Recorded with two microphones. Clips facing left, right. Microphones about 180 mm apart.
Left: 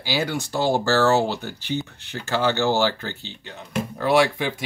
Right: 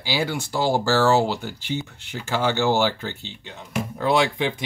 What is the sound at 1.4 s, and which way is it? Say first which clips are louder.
Speech: left 1 dB; 15° right (ahead or behind).